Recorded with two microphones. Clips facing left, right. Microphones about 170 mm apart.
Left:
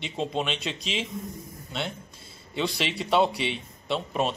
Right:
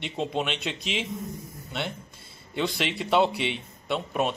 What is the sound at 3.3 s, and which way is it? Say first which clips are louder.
Speech: right 1 dB; 60° right (ahead or behind).